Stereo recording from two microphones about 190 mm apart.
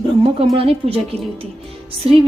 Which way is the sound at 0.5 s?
30° right (ahead or behind).